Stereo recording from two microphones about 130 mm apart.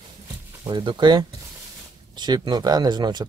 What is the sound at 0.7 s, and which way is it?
Speech, 35° right (ahead or behind).